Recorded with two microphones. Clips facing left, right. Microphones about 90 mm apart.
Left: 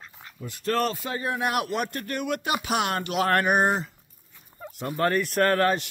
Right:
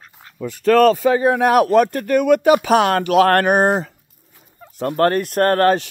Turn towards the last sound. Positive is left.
turn(degrees=-50)  # may be behind; listen again after turning